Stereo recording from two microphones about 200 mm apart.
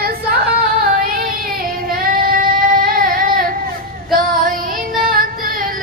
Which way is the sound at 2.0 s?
45° right (ahead or behind).